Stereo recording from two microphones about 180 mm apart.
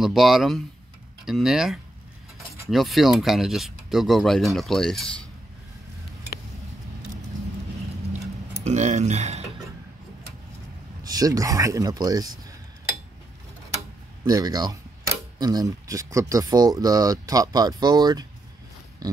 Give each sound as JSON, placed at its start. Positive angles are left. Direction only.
{"t": 0.0, "sound": "speech", "side_deg": 0}
{"t": 8.6, "sound": "speech", "side_deg": -40}
{"t": 11.1, "sound": "speech", "side_deg": -20}
{"t": 14.2, "sound": "speech", "side_deg": -20}